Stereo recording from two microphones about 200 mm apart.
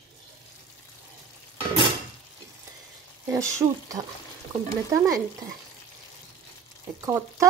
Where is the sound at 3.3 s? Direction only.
15° right (ahead or behind).